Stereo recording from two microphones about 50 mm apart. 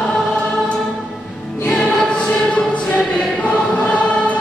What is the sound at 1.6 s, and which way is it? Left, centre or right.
Music, centre.